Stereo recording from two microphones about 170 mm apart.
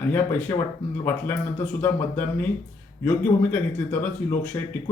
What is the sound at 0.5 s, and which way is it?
Speech, 25° left (ahead or behind).